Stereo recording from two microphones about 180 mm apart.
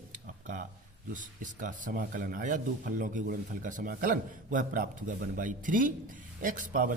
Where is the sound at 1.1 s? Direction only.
45° right (ahead or behind).